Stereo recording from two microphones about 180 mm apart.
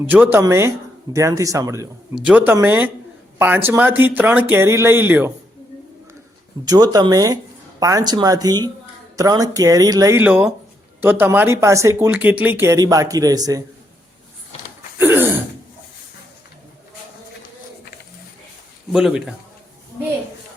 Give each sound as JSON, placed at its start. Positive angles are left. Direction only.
{"t": 0.1, "sound": "speech", "side_deg": -10}
{"t": 2.1, "sound": "speech", "side_deg": -5}
{"t": 6.7, "sound": "speech", "side_deg": -20}
{"t": 14.9, "sound": "a sound", "side_deg": -10}
{"t": 18.9, "sound": "a man's voice", "side_deg": -5}